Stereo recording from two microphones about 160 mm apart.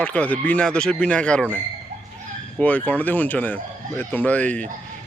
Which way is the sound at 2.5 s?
10° left (ahead or behind).